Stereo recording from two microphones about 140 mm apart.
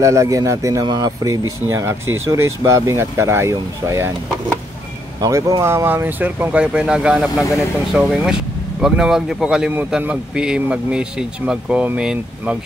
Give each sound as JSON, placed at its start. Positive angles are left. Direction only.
{"t": 0.0, "sound": "speech", "side_deg": -20}
{"t": 5.2, "sound": "speech", "side_deg": -25}